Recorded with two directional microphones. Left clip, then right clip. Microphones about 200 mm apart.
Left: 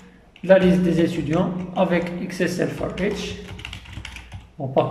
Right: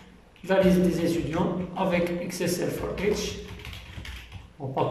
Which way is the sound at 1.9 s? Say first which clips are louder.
Left 2 dB; 40° left (ahead or behind).